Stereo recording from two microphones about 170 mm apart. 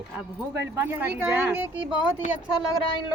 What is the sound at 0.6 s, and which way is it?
Speech, 10° right (ahead or behind).